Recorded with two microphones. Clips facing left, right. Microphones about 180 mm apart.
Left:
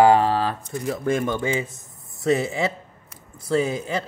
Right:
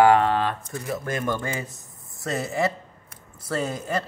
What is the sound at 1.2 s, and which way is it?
Speech, 20° left (ahead or behind).